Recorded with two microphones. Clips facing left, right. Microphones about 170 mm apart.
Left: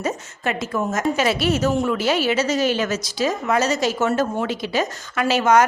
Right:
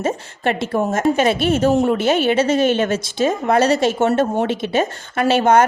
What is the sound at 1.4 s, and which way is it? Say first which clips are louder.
Speech: right 3 dB; 50° right (ahead or behind).